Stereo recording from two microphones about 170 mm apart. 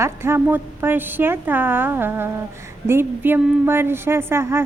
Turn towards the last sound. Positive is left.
turn(degrees=-15)  # may be behind; listen again after turning